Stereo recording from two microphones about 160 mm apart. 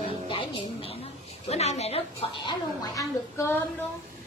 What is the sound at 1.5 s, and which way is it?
Speech, 40° left (ahead or behind).